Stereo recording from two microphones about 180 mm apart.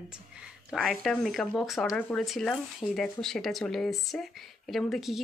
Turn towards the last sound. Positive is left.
turn(degrees=0)  # may be behind; listen again after turning